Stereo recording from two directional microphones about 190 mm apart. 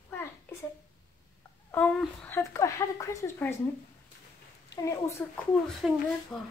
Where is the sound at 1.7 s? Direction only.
10° left (ahead or behind).